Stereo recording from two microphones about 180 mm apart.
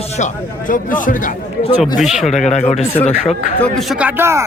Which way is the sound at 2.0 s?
Centre (ahead or behind).